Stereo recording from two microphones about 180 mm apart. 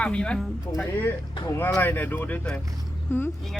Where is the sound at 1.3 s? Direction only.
25° left (ahead or behind).